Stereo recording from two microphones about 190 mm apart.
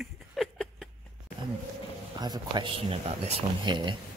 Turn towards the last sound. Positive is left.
turn(degrees=-25)  # may be behind; listen again after turning